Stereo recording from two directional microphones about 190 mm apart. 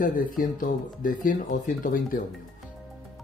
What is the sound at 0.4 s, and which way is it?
Speech, 45° left (ahead or behind).